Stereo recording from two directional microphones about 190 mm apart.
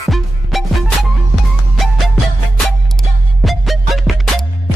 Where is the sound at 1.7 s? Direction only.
Centre (ahead or behind).